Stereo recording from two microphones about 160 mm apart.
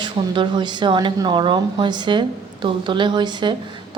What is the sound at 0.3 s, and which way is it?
A woman's voice, 30° right (ahead or behind).